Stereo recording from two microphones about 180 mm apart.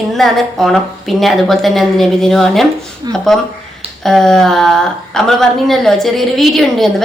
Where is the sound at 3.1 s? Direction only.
25° right (ahead or behind).